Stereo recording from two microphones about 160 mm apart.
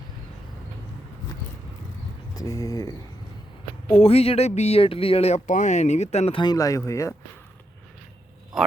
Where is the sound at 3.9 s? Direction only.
40° left (ahead or behind).